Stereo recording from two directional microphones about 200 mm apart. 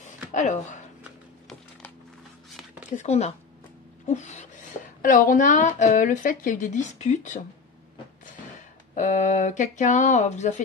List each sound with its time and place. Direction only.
0.0 s a sound: 35° left (ahead or behind)
3.0 s a woman's voice: 35° left (ahead or behind)
8.9 s a woman's voice: 40° left (ahead or behind)